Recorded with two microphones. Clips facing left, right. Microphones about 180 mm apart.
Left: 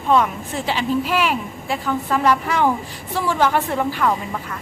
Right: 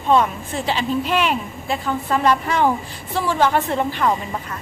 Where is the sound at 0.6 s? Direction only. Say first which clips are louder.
Left 1 dB; 15° left (ahead or behind).